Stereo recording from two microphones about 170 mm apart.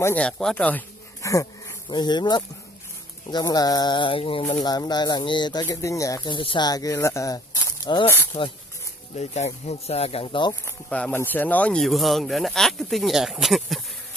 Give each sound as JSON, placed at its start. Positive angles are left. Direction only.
{"t": 0.0, "sound": "speech", "side_deg": 10}
{"t": 8.1, "sound": "speech", "side_deg": 15}
{"t": 9.1, "sound": "speech", "side_deg": 40}
{"t": 10.5, "sound": "speech", "side_deg": 15}